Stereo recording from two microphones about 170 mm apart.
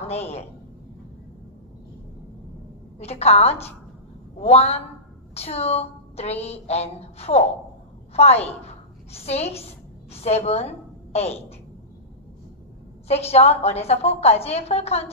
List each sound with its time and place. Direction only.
0.0 s a woman's voice: 40° left (ahead or behind)
3.0 s a woman's voice: 40° left (ahead or behind)
13.1 s a woman's voice: 35° left (ahead or behind)